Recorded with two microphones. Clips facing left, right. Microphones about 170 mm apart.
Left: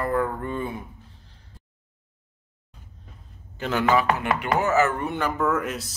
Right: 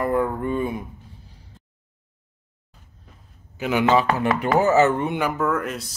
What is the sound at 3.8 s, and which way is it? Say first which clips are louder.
Speech: right 2 dB; 30° right (ahead or behind).